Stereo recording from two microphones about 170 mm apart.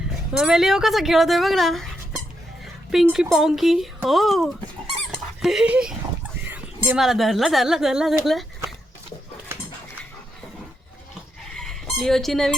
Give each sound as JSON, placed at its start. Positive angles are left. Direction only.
{"t": 0.3, "sound": "speech", "side_deg": -5}
{"t": 5.1, "sound": "dog", "side_deg": 0}
{"t": 6.8, "sound": "speech", "side_deg": -5}
{"t": 11.5, "sound": "fowl", "side_deg": 0}